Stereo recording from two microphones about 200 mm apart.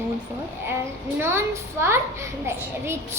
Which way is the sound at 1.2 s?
10° right (ahead or behind).